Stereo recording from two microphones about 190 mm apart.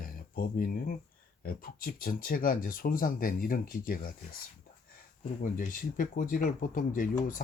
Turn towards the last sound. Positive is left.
turn(degrees=45)  # may be behind; listen again after turning